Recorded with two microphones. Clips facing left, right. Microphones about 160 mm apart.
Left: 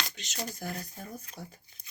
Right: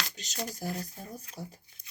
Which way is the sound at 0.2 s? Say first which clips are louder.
Even; 40° right (ahead or behind).